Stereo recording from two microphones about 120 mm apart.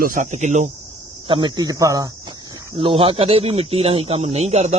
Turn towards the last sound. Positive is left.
turn(degrees=-60)  # may be behind; listen again after turning